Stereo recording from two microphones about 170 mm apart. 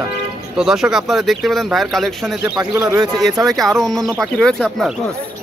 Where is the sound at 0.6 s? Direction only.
5° right (ahead or behind).